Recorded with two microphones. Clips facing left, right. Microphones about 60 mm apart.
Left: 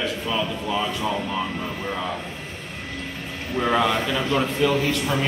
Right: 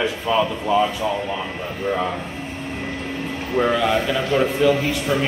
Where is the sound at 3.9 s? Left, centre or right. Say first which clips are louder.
Right 3 dB; centre.